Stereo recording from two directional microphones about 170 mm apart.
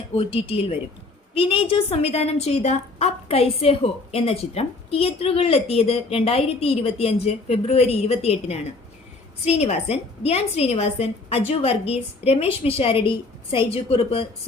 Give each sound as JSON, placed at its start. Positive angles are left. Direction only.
{"t": 0.2, "sound": "a woman's voice", "side_deg": 35}